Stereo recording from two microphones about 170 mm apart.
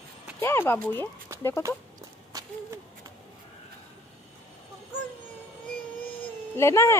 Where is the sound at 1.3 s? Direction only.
15° right (ahead or behind).